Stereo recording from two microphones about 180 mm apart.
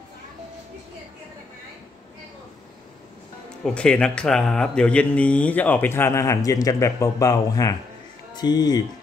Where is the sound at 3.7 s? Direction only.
5° left (ahead or behind); by 8.8 s 20° left (ahead or behind).